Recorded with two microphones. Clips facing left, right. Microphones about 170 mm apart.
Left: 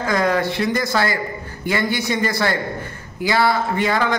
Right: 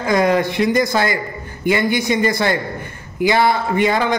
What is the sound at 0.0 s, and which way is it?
A man's voice, 15° right (ahead or behind).